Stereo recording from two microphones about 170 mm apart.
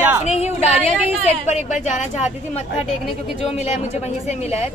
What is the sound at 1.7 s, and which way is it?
Speech, 45° left (ahead or behind).